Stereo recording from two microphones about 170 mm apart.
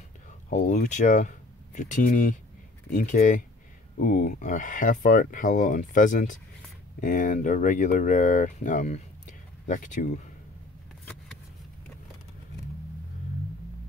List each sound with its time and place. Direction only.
0.5 s speech: 50° left (ahead or behind)